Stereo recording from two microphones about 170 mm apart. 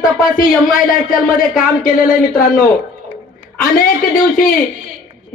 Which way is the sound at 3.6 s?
55° left (ahead or behind).